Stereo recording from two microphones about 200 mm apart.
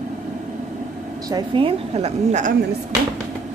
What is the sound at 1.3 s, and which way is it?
A woman's voice, 25° right (ahead or behind).